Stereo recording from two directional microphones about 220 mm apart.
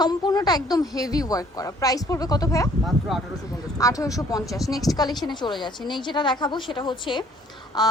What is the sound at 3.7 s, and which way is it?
A woman's voice, 15° left (ahead or behind).